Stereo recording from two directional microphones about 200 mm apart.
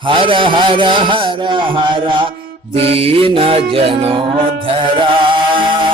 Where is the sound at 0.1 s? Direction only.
25° right (ahead or behind).